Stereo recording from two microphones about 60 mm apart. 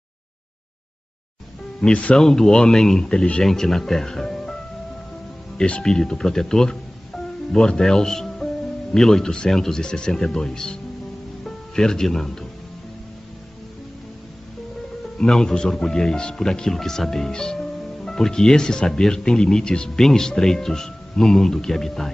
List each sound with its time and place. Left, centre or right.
1.8 s speech: centre
2.1 s a man's voice: centre
5.6 s a man's voice: centre
15.1 s a man's voice: centre